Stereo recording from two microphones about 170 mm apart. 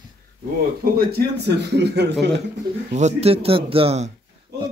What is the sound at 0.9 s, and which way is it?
Speech, 70° right (ahead or behind).